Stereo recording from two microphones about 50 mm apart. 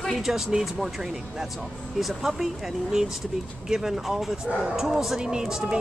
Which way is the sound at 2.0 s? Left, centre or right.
Centre.